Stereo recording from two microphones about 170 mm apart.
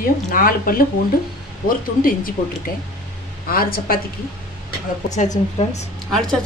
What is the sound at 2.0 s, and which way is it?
Speech, 55° left (ahead or behind).